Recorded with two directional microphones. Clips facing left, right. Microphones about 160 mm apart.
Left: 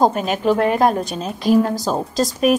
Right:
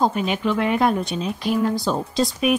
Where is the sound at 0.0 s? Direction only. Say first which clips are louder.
Left 4 dB; 40° left (ahead or behind).